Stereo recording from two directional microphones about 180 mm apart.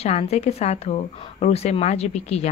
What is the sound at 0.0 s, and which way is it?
Speech, 35° left (ahead or behind).